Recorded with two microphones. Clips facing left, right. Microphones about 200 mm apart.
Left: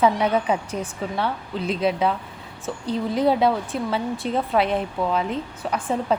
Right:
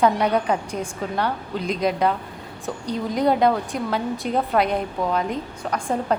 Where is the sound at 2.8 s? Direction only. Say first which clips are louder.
Left 1 dB; 30° left (ahead or behind).